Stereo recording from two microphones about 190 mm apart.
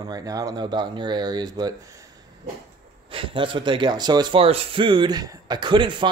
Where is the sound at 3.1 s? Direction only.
25° right (ahead or behind).